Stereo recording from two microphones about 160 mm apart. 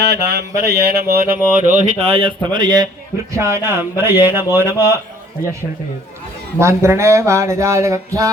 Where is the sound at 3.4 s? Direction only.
15° right (ahead or behind).